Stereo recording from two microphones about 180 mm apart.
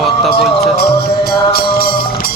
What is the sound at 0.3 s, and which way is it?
Music, 60° left (ahead or behind).